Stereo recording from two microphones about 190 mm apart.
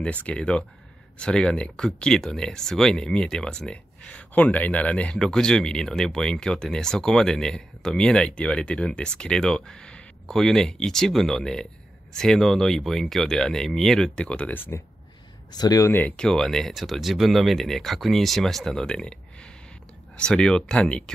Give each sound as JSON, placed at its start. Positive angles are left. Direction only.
{"t": 0.0, "sound": "speech", "side_deg": 5}